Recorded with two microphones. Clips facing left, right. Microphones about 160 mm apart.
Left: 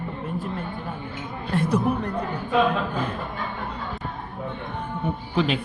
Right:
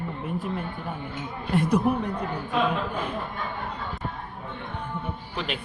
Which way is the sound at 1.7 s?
10° right (ahead or behind).